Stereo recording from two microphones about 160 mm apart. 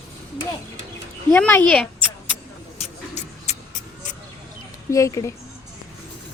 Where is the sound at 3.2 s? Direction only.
45° left (ahead or behind).